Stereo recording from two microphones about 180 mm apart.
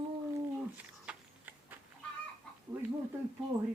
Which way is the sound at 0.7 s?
10° right (ahead or behind).